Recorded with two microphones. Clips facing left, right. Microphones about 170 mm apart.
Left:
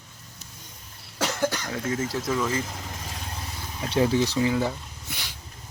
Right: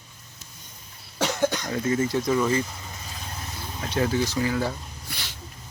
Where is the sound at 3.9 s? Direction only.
30° left (ahead or behind).